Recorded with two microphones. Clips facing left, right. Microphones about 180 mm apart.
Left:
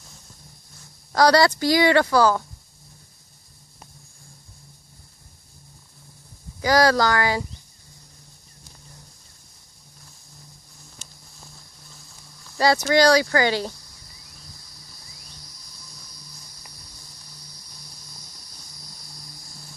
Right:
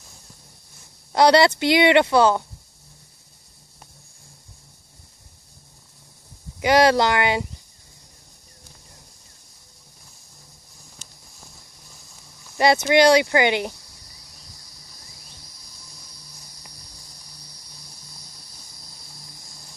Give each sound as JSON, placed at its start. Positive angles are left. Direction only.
{"t": 1.1, "sound": "speech", "side_deg": -25}
{"t": 6.6, "sound": "speech", "side_deg": -25}
{"t": 12.5, "sound": "speech", "side_deg": -20}